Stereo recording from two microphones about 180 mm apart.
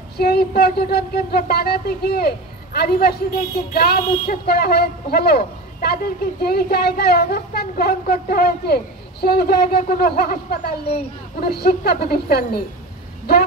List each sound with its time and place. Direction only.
0.2 s a woman's voice: 60° left (ahead or behind)